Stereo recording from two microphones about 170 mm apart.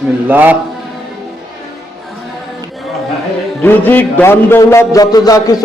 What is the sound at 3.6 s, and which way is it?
Music, 10° left (ahead or behind).